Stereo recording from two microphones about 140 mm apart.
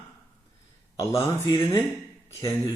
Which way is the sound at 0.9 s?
20° left (ahead or behind).